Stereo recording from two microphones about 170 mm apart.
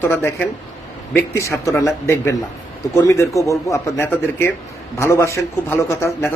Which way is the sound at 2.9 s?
15° left (ahead or behind).